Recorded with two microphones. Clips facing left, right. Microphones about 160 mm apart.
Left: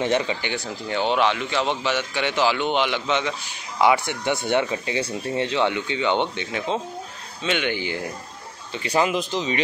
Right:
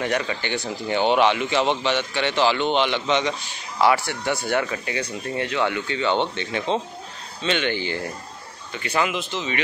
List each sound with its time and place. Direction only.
0.0 s speech: 20° left (ahead or behind)
0.8 s a man's voice: centre (ahead or behind)
3.8 s speech: 20° left (ahead or behind)
8.7 s speech: 35° left (ahead or behind)